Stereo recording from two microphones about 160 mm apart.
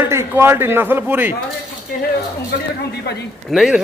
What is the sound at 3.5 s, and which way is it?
Speech, centre (ahead or behind).